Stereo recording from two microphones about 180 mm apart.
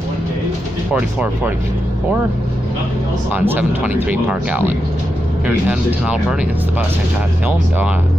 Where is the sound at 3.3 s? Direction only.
10° right (ahead or behind).